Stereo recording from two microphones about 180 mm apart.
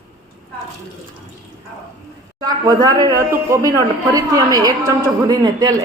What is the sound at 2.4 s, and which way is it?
Speech, 20° right (ahead or behind).